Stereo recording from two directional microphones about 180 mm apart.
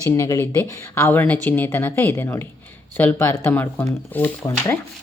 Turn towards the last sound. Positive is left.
turn(degrees=10)  # may be behind; listen again after turning